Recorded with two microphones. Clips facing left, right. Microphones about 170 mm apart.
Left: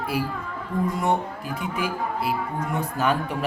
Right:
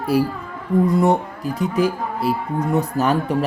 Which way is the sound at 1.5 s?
40° right (ahead or behind).